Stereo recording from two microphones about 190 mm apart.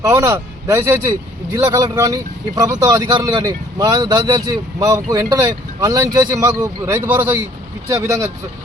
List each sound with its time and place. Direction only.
0.0 s speech: 15° right (ahead or behind)